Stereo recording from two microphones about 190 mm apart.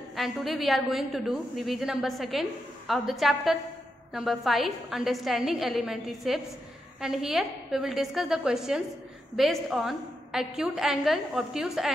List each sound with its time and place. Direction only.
0.1 s a woman's voice: centre (ahead or behind)